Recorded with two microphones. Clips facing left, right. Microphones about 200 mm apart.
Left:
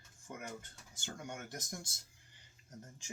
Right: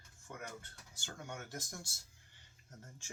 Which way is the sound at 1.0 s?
15° left (ahead or behind).